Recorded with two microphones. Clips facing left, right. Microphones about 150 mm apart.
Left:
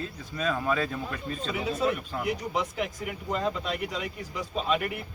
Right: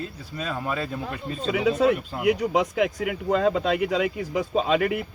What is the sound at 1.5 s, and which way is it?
A man's voice, 90° right.